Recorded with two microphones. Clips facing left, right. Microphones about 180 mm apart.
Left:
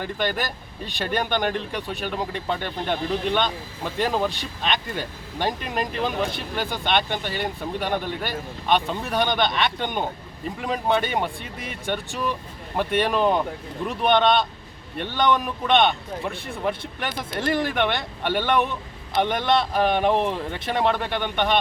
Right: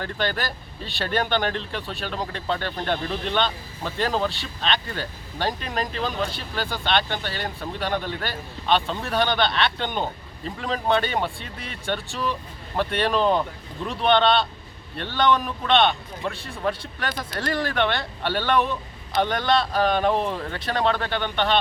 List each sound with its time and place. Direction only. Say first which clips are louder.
0.0 s speech: left 1 dB; 15° left (ahead or behind)